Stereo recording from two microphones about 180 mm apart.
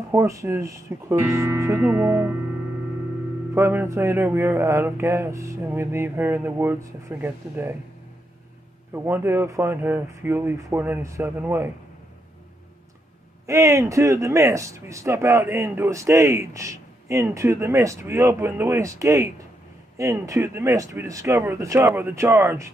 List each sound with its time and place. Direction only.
0.1 s speech: 15° right (ahead or behind)
3.5 s speech: 15° right (ahead or behind)
8.9 s speech: 15° right (ahead or behind)
13.5 s speech: 15° right (ahead or behind)